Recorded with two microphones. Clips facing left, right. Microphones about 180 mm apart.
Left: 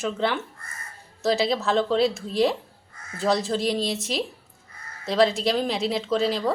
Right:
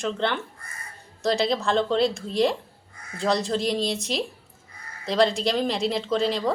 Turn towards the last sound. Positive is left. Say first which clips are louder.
# even
turn(degrees=0)  # may be behind; listen again after turning